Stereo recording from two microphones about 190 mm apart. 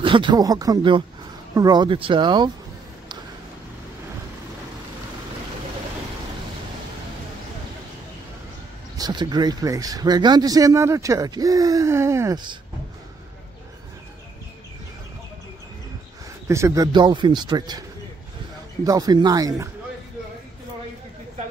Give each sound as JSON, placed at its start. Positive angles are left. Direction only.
{"t": 0.0, "sound": "speech", "side_deg": -25}
{"t": 8.9, "sound": "speech", "side_deg": -20}
{"t": 16.4, "sound": "speech", "side_deg": -15}
{"t": 18.9, "sound": "speech", "side_deg": -20}